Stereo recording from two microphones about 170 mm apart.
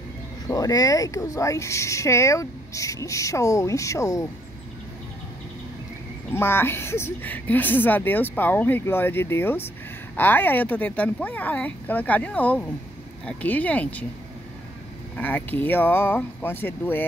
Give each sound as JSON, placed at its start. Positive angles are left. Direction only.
{"t": 0.5, "sound": "speech", "side_deg": 20}
{"t": 6.3, "sound": "a woman's voice", "side_deg": 15}
{"t": 15.1, "sound": "a woman's voice", "side_deg": 10}